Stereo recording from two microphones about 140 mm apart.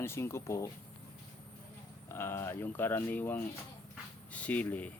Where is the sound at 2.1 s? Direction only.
15° left (ahead or behind).